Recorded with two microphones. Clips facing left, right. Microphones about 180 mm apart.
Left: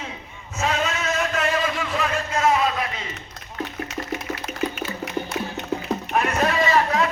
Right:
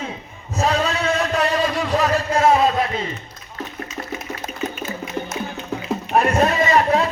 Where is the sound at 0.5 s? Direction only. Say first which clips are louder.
Right 4 dB; 35° right (ahead or behind).